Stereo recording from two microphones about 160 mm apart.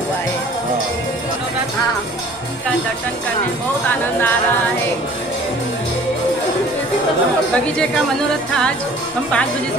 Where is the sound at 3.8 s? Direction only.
15° left (ahead or behind).